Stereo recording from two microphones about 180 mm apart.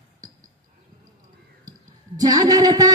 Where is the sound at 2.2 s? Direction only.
20° right (ahead or behind).